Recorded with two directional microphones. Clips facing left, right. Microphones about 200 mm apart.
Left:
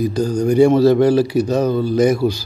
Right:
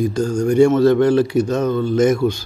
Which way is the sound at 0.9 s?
5° left (ahead or behind).